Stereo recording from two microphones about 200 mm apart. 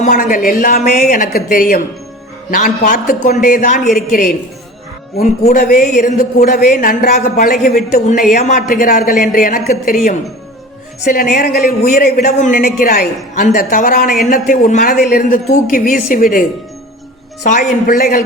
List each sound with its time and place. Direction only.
0.0 s a man's voice: 45° left (ahead or behind)
5.1 s speech: 35° left (ahead or behind)
5.5 s a man's voice: 45° left (ahead or behind)
17.4 s speech: 40° left (ahead or behind)